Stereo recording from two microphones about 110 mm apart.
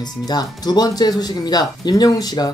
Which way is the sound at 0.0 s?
40° left (ahead or behind).